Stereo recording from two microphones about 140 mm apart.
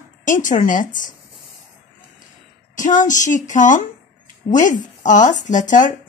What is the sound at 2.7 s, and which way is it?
Speech, 65° left (ahead or behind).